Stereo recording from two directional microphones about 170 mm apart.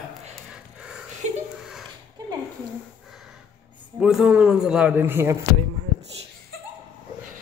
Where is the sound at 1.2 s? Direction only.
45° right (ahead or behind).